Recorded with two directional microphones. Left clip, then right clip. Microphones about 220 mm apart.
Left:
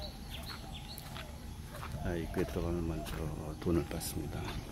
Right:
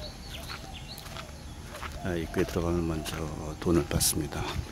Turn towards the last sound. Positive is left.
turn(degrees=-15)  # may be behind; listen again after turning